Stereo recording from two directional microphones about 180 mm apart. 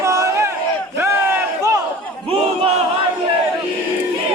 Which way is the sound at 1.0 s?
15° right (ahead or behind).